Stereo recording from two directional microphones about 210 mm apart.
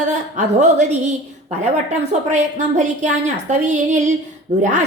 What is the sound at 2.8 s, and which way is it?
A woman's voice, 35° right (ahead or behind).